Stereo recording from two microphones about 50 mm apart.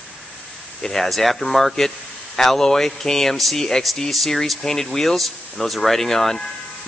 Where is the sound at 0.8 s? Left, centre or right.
Centre.